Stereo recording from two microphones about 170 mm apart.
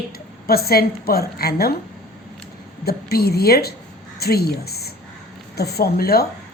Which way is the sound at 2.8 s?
65° left (ahead or behind).